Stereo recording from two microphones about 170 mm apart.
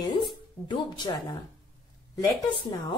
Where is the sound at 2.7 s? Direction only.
25° left (ahead or behind).